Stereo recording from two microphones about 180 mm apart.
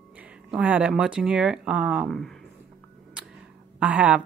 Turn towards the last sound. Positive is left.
turn(degrees=-10)  # may be behind; listen again after turning